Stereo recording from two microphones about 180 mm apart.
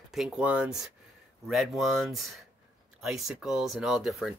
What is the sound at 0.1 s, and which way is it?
Speech, 5° right (ahead or behind).